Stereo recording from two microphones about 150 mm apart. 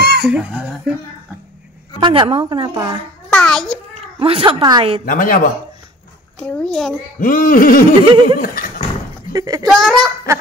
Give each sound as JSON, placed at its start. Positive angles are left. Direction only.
{"t": 0.0, "sound": "a sound", "side_deg": -90}
{"t": 0.3, "sound": "speech", "side_deg": -5}
{"t": 2.0, "sound": "a woman's voice", "side_deg": -35}
{"t": 2.7, "sound": "speech", "side_deg": -25}
{"t": 3.3, "sound": "a child's voice", "side_deg": 5}
{"t": 3.9, "sound": "speech", "side_deg": -40}
{"t": 5.0, "sound": "a sound", "side_deg": 70}
{"t": 6.4, "sound": "a child's voice", "side_deg": 5}
{"t": 7.2, "sound": "a sound", "side_deg": 70}
{"t": 8.0, "sound": "a woman's voice", "side_deg": -35}
{"t": 8.4, "sound": "horse", "side_deg": 70}
{"t": 9.3, "sound": "speech", "side_deg": -25}
{"t": 9.7, "sound": "a child's voice", "side_deg": 0}